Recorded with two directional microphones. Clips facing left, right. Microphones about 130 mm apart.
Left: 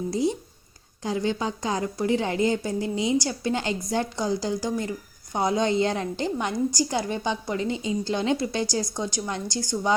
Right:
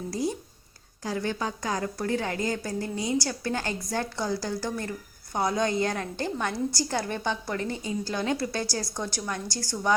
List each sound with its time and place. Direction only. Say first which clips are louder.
0.1 s a woman's voice: left 3 dB; 25° left (ahead or behind)